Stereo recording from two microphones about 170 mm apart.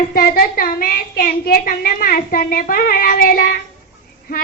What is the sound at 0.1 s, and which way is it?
Child singing, 60° left (ahead or behind).